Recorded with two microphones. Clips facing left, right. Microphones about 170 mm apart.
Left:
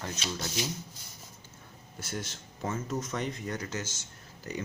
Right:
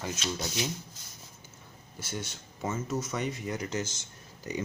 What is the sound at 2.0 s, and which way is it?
Speech, 5° right (ahead or behind).